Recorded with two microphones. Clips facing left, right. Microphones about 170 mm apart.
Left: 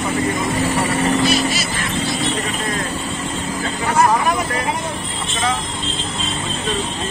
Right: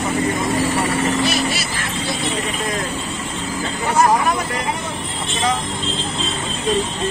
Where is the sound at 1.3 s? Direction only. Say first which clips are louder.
Left 2 dB; 60° right (ahead or behind).